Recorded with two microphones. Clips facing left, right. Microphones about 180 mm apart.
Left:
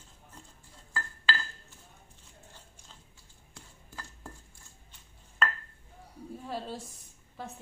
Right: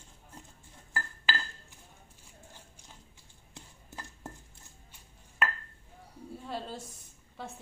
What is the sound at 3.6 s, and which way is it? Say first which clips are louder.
Chopping: right 1 dB; 20° right (ahead or behind).